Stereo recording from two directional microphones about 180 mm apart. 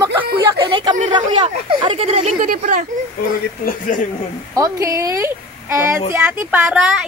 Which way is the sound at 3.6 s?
45° left (ahead or behind).